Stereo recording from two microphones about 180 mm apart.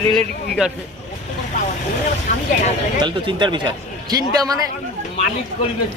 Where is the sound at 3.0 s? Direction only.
25° right (ahead or behind).